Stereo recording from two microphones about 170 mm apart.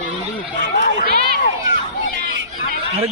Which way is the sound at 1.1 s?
65° right (ahead or behind).